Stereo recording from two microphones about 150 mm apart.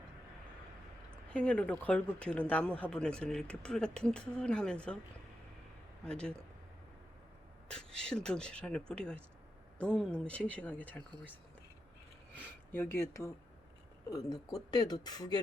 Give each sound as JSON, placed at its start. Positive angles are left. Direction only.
{"t": 1.3, "sound": "speech", "side_deg": 5}
{"t": 6.1, "sound": "speech", "side_deg": 5}
{"t": 7.7, "sound": "speech", "side_deg": 5}
{"t": 12.7, "sound": "speech", "side_deg": 15}
{"t": 14.3, "sound": "speech", "side_deg": 25}